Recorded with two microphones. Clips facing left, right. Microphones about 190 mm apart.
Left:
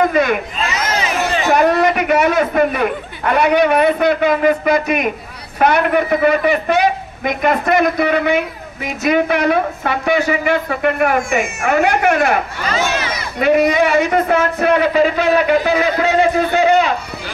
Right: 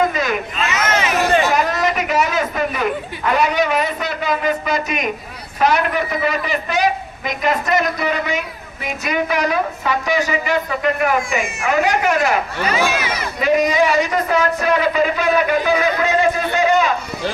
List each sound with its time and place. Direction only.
0.1 s speech: 60° left (ahead or behind)
0.6 s a sound: 30° left (ahead or behind)
1.5 s a man's voice: 60° left (ahead or behind)
12.6 s speech: 10° right (ahead or behind)
13.4 s a man's voice: 60° left (ahead or behind)
16.5 s a man's voice: 60° left (ahead or behind)